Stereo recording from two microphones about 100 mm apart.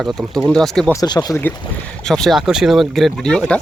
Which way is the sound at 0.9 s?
40° left (ahead or behind).